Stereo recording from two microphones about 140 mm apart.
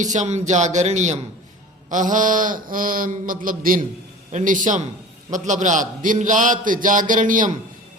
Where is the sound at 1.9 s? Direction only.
65° right (ahead or behind).